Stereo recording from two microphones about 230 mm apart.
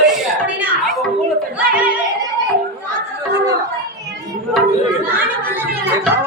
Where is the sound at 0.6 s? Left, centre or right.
Centre.